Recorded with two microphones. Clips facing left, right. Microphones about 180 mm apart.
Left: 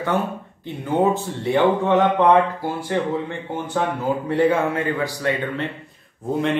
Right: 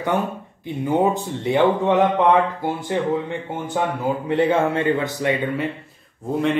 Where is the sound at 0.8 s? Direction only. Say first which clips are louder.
Even; 10° right (ahead or behind).